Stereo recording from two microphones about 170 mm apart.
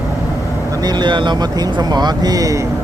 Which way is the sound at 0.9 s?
25° right (ahead or behind).